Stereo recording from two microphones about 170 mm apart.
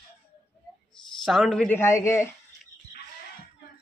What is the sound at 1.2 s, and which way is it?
Speech, centre (ahead or behind).